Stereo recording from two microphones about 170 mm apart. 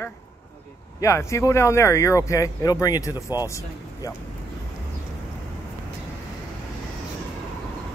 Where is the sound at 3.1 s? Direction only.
15° right (ahead or behind).